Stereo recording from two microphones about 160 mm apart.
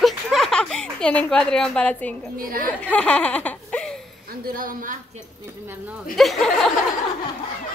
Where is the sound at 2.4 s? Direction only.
65° right (ahead or behind).